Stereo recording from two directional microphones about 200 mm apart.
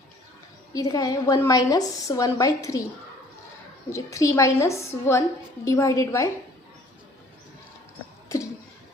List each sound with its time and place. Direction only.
0.7 s a woman's voice: 15° left (ahead or behind)
3.8 s a woman's voice: 15° left (ahead or behind)